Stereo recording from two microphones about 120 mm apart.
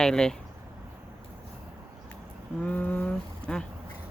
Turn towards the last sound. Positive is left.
turn(degrees=10)  # may be behind; listen again after turning